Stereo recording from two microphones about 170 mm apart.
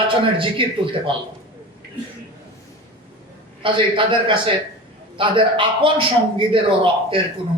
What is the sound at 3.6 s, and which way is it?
A man's voice, 30° right (ahead or behind).